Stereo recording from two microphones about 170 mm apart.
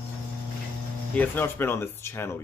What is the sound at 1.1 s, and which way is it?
Speech, 10° left (ahead or behind).